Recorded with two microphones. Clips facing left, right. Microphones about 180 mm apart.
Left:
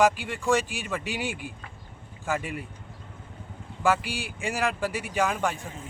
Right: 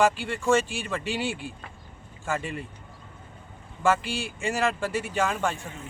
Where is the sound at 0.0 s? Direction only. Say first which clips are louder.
Even; 15° left (ahead or behind).